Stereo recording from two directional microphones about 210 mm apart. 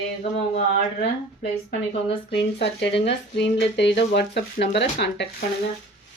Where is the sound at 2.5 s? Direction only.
55° left (ahead or behind).